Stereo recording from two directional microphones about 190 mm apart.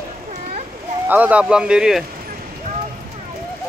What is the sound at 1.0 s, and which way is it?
Speech, 10° right (ahead or behind).